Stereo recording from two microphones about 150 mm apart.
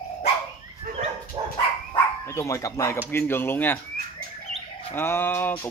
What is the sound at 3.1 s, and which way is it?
Speech, 15° left (ahead or behind).